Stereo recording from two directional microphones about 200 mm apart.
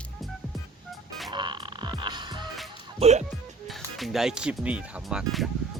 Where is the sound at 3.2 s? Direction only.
Centre (ahead or behind).